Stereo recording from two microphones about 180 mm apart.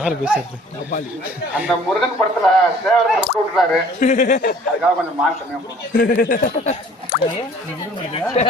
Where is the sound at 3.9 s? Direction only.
45° left (ahead or behind).